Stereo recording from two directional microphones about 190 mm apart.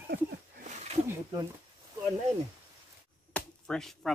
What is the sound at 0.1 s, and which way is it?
Speech, 55° right (ahead or behind).